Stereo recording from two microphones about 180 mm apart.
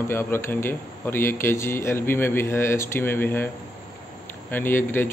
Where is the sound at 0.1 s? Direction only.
15° left (ahead or behind).